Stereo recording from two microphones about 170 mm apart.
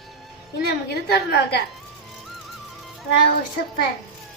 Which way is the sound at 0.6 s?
75° left (ahead or behind).